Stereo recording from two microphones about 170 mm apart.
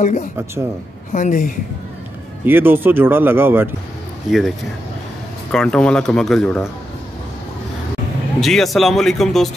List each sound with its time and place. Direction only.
0.0 s a woman's voice: 45° left (ahead or behind)
2.4 s speech: 10° right (ahead or behind)
4.3 s speech: centre (ahead or behind)
8.4 s speech: centre (ahead or behind)